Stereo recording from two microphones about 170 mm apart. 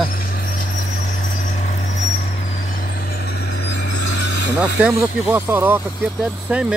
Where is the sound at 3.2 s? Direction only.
80° left.